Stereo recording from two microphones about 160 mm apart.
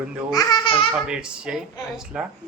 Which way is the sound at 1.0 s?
5° right (ahead or behind).